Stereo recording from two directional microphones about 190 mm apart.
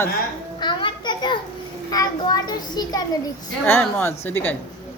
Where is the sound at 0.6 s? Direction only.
25° left (ahead or behind).